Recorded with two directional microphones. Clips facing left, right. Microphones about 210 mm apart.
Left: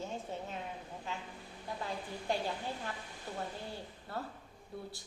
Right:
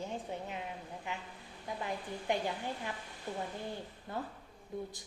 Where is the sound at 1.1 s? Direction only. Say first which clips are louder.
Even; 15° right (ahead or behind).